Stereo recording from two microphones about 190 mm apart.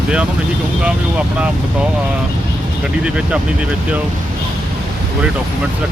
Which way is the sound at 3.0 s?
5° right (ahead or behind).